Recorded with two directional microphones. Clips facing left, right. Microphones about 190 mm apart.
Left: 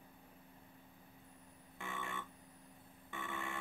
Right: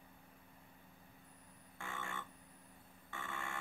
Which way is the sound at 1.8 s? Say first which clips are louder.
Left 1 dB; 20° left (ahead or behind).